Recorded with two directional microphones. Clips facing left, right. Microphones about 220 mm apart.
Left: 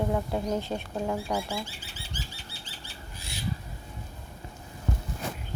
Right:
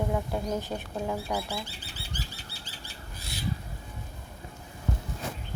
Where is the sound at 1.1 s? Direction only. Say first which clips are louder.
Left 2 dB; 5° right (ahead or behind).